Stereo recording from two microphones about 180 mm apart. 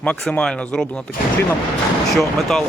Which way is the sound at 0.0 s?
5° left (ahead or behind).